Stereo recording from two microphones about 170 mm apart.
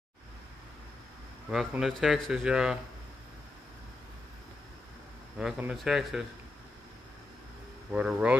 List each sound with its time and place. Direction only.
1.5 s speech: centre (ahead or behind)
5.4 s speech: 5° right (ahead or behind)
7.9 s speech: 5° right (ahead or behind)